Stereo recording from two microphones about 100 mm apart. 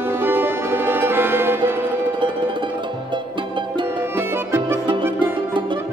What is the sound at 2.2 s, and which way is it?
Music, 55° right (ahead or behind).